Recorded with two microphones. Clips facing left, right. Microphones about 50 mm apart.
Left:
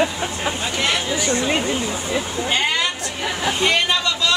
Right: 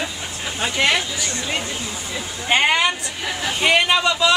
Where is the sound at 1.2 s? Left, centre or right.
Left.